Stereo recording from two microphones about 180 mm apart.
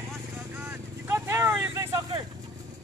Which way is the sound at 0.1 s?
10° right (ahead or behind).